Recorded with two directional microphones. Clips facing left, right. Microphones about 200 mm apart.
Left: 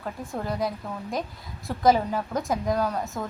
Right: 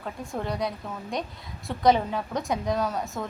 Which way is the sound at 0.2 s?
Centre (ahead or behind).